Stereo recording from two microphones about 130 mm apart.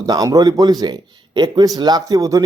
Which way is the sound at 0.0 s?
30° right (ahead or behind).